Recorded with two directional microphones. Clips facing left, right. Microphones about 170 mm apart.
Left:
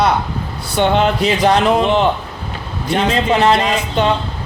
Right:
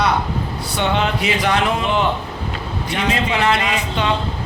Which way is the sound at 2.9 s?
35° left (ahead or behind).